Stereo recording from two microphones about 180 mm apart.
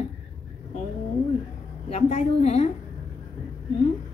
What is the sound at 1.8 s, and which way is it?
Speech, 40° left (ahead or behind).